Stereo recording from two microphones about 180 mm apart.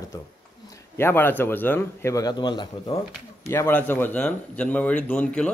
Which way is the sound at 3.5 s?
10° left (ahead or behind).